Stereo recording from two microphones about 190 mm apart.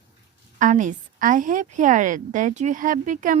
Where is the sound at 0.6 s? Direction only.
40° right (ahead or behind).